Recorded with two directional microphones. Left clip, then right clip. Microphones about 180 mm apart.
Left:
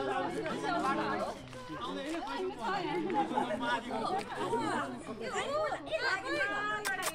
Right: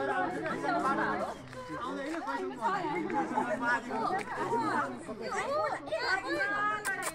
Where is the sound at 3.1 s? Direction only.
Centre (ahead or behind).